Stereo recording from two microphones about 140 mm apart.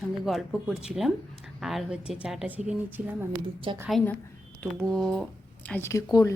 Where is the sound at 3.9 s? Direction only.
Centre (ahead or behind).